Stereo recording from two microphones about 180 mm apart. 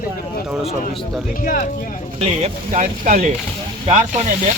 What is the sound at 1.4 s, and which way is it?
Speech, 45° left (ahead or behind).